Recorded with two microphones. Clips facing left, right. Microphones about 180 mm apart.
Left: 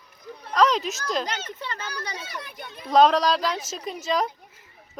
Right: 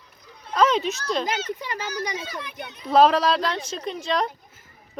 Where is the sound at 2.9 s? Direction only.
5° right (ahead or behind).